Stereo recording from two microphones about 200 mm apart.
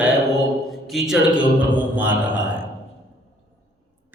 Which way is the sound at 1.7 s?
10° right (ahead or behind).